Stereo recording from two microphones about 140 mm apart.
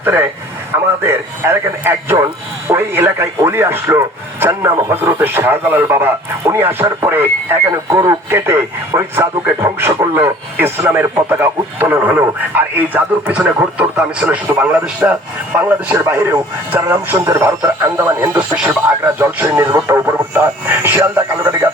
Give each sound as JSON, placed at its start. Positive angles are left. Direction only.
{"t": 0.0, "sound": "speech", "side_deg": -15}